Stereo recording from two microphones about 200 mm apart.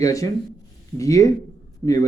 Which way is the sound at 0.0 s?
15° left (ahead or behind).